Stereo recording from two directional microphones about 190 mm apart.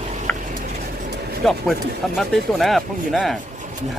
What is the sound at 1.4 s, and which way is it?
Speech, centre (ahead or behind).